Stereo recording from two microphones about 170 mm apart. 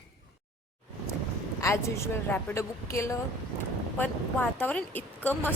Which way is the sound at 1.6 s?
15° left (ahead or behind).